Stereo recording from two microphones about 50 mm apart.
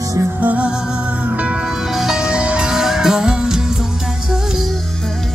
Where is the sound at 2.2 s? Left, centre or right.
Right.